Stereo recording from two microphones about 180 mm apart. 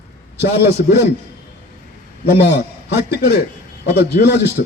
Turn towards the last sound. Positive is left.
turn(degrees=70)  # may be behind; listen again after turning